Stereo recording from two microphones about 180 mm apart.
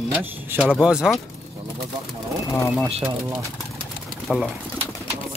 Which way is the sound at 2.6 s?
Centre (ahead or behind).